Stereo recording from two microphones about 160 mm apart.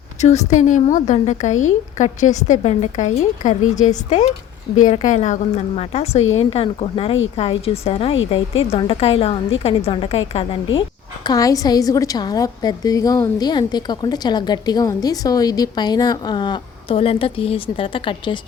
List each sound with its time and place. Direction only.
0.2 s a woman's voice: 45° left (ahead or behind)